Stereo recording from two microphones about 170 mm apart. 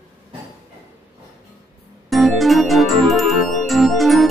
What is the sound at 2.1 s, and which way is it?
Organ, centre (ahead or behind).